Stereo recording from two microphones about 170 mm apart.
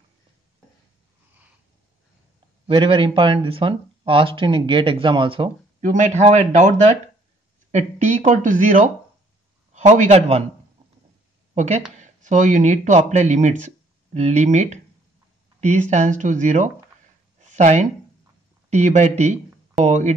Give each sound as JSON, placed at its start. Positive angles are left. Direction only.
{"t": 2.6, "sound": "speech", "side_deg": -30}
{"t": 5.8, "sound": "a man's voice", "side_deg": -45}
{"t": 11.5, "sound": "speech", "side_deg": -40}
{"t": 17.4, "sound": "a sound", "side_deg": -45}
{"t": 18.7, "sound": "speech", "side_deg": -45}